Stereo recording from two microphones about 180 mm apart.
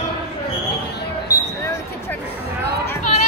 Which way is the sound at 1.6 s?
15° left (ahead or behind).